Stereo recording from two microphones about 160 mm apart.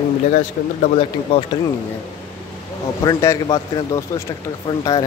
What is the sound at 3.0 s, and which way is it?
Speech, 20° left (ahead or behind).